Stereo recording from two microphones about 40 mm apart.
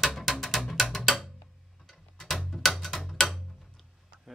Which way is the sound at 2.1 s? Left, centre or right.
Centre.